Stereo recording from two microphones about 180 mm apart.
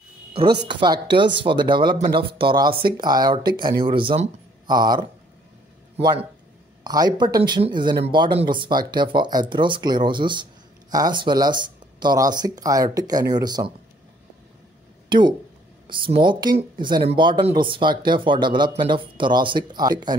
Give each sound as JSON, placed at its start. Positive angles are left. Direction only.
{"t": 0.7, "sound": "speech", "side_deg": -25}
{"t": 6.8, "sound": "speech", "side_deg": -20}
{"t": 15.0, "sound": "speech", "side_deg": -25}